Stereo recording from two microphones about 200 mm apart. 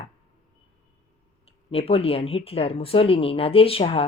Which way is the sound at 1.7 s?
30° left (ahead or behind).